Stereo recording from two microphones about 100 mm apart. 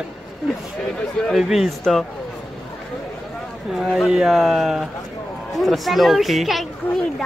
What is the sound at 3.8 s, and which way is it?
Speech, centre (ahead or behind).